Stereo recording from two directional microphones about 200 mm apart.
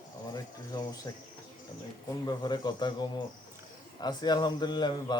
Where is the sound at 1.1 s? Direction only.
20° left (ahead or behind).